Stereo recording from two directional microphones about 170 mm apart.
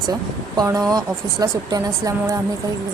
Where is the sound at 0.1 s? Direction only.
20° right (ahead or behind).